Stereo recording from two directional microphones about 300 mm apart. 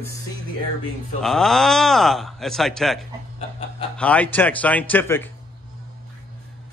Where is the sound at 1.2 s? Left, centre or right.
Centre.